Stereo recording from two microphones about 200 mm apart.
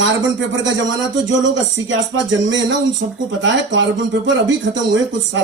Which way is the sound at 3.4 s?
65° right (ahead or behind).